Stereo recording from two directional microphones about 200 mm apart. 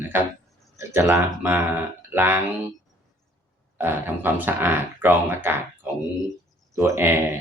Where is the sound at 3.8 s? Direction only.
10° right (ahead or behind).